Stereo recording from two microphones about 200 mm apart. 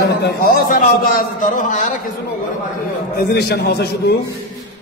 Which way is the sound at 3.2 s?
55° left (ahead or behind).